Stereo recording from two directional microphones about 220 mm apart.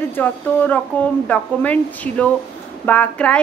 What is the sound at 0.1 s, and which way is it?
A woman's voice, 10° left (ahead or behind).